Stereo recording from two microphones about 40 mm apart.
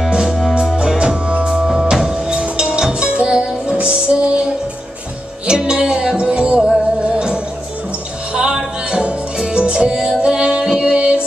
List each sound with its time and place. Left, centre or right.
0.7 s music: right
5.5 s music: centre
8.4 s music: centre